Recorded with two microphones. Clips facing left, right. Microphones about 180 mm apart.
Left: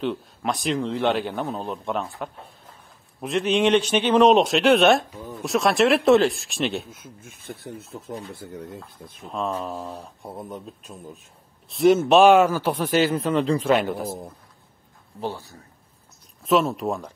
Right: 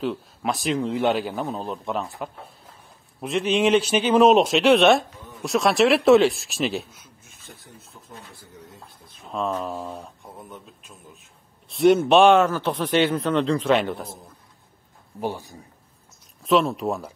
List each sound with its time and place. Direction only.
0.0 s a man's voice: centre (ahead or behind)
6.9 s speech: 50° left (ahead or behind); by 8.0 s 65° left (ahead or behind)
8.5 s speech: 55° left (ahead or behind)
9.3 s a man's voice: 5° left (ahead or behind)
10.2 s speech: 35° left (ahead or behind)
11.7 s speech: centre (ahead or behind)
15.1 s speech: 15° right (ahead or behind)
16.4 s a man's voice: centre (ahead or behind)